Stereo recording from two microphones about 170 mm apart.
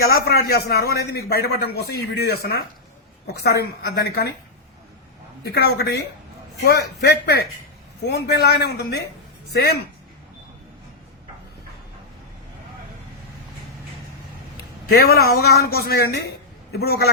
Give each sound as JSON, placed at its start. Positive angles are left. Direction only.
{"t": 0.0, "sound": "a man's voice", "side_deg": 65}
{"t": 5.5, "sound": "a man's voice", "side_deg": 70}
{"t": 14.8, "sound": "a man's voice", "side_deg": 65}